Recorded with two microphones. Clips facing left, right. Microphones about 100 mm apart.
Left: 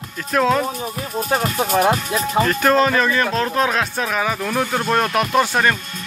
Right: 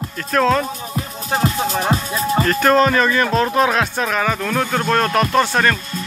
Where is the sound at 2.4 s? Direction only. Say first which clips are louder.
Right 2 dB; centre (ahead or behind).